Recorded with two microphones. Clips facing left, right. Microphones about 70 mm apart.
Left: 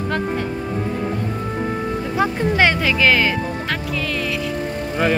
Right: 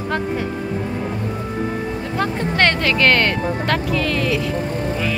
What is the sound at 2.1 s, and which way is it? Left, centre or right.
Speech, centre.